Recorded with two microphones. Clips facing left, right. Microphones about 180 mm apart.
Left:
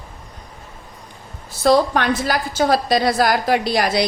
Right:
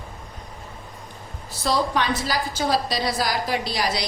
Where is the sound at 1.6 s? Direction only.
55° left (ahead or behind).